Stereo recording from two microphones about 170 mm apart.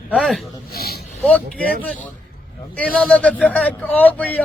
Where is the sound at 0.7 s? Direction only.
65° left (ahead or behind).